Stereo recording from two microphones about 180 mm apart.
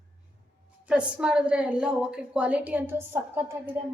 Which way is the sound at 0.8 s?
5° right (ahead or behind).